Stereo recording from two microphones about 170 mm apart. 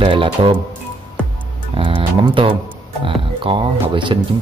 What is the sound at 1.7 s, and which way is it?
Speech, 30° right (ahead or behind).